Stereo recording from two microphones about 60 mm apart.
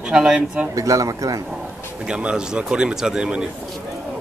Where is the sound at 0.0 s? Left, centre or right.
Centre.